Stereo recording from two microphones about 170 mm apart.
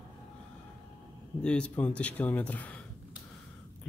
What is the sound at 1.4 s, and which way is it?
Speech, 5° left (ahead or behind).